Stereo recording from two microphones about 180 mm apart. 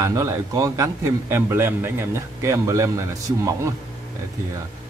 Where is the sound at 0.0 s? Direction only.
20° right (ahead or behind).